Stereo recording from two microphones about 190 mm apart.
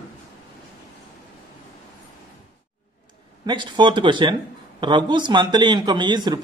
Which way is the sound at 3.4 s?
25° right (ahead or behind).